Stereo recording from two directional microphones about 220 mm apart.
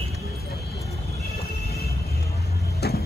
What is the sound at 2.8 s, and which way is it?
Music, 45° left (ahead or behind).